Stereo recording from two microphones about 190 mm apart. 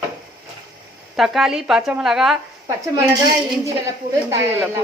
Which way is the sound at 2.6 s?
20° right (ahead or behind).